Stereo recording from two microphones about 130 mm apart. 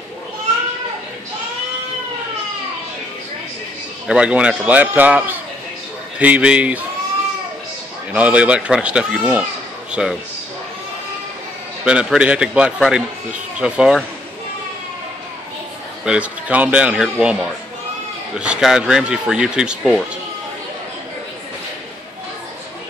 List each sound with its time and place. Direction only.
4.1 s a man's voice: 10° right (ahead or behind)
8.1 s a man's voice: 10° right (ahead or behind)
11.8 s a man's voice: 5° right (ahead or behind)
16.1 s a man's voice: 10° right (ahead or behind)